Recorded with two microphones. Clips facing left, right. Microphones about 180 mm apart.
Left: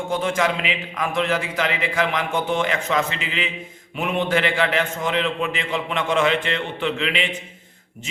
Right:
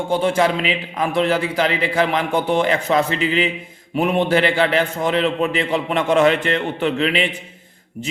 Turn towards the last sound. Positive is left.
turn(degrees=-40)  # may be behind; listen again after turning